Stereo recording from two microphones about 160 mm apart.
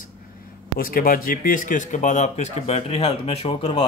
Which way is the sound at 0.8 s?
65° left (ahead or behind).